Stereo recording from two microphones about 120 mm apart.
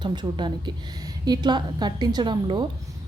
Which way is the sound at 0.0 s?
40° right (ahead or behind).